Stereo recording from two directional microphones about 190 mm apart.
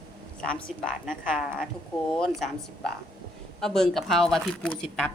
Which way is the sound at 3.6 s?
Centre (ahead or behind).